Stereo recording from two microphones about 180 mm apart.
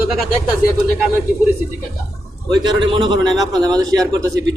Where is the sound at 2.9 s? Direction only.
25° right (ahead or behind).